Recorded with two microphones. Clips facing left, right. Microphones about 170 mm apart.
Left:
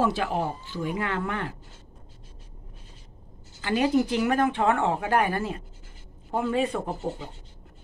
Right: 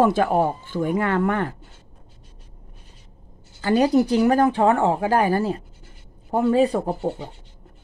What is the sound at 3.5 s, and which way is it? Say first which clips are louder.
Speech: right 5 dB; 40° right (ahead or behind).